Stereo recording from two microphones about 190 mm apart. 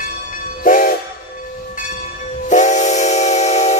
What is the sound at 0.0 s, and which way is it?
Train, 45° left (ahead or behind).